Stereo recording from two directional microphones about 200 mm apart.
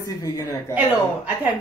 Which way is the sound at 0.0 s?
20° left (ahead or behind).